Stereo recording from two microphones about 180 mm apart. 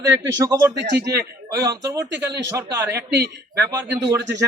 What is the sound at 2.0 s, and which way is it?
Speech, 80° right.